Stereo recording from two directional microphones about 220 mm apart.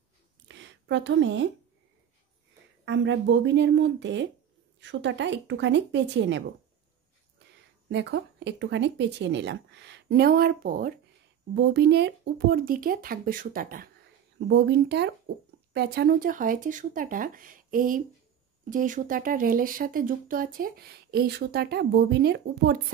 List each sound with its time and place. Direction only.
0.5 s a sound: 55° right (ahead or behind)
2.8 s speech: 55° right (ahead or behind)
7.9 s speech: 55° right (ahead or behind)
11.5 s speech: 50° right (ahead or behind)
14.5 s speech: 50° right (ahead or behind)